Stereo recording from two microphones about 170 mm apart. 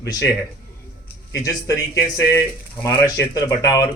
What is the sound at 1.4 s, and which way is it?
A man's voice, 20° left (ahead or behind).